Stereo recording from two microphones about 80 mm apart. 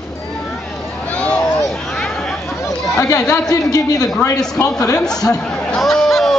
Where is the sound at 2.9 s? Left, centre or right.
Left.